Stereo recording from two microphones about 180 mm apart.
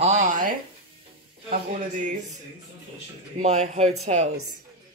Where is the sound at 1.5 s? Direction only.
40° right (ahead or behind).